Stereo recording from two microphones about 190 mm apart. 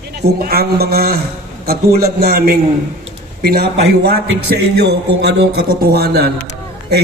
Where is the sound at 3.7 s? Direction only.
75° right (ahead or behind); by 6.3 s 55° right (ahead or behind).